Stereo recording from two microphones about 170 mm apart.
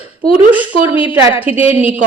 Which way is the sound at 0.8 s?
10° right (ahead or behind).